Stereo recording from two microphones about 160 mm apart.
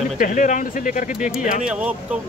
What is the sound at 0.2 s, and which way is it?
Speech, 55° left (ahead or behind).